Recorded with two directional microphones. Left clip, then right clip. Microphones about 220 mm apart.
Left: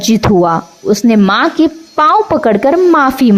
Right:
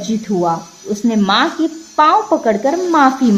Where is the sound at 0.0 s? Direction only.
45° left (ahead or behind).